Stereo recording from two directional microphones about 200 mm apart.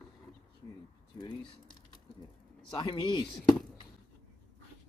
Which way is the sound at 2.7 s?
20° left (ahead or behind).